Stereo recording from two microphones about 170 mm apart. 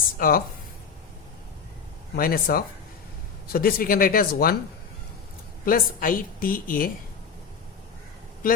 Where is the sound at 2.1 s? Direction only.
60° left (ahead or behind).